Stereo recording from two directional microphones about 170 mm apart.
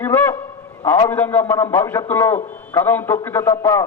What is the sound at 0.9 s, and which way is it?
A man's voice, 15° left (ahead or behind).